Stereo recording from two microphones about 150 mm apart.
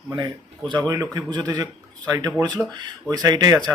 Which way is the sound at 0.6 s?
30° right (ahead or behind).